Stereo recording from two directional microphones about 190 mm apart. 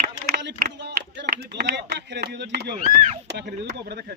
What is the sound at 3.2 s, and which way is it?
Speech, 60° right (ahead or behind).